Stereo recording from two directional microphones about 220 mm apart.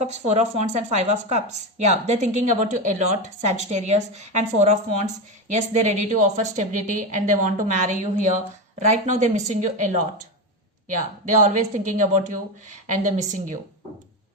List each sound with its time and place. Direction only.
0.0 s speech: 30° right (ahead or behind)
11.4 s speech: 35° right (ahead or behind)